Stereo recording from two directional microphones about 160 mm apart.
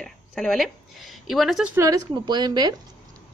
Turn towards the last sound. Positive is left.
turn(degrees=-25)  # may be behind; listen again after turning